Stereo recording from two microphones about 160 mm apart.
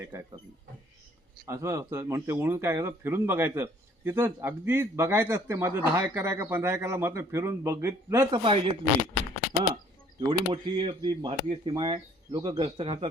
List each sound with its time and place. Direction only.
1.5 s speech: 20° right (ahead or behind)
8.3 s speech: 35° right (ahead or behind)
10.2 s speech: 30° right (ahead or behind)